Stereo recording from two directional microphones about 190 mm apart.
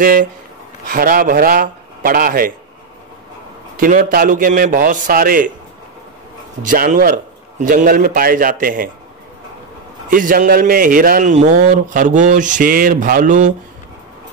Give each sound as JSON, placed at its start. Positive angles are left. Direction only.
{"t": 0.0, "sound": "a man's voice", "side_deg": -45}
{"t": 3.7, "sound": "a man's voice", "side_deg": -45}
{"t": 6.6, "sound": "a man's voice", "side_deg": -45}
{"t": 10.0, "sound": "a man's voice", "side_deg": -45}